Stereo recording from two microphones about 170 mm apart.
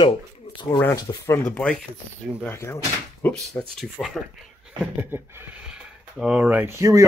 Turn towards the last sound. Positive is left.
turn(degrees=-15)  # may be behind; listen again after turning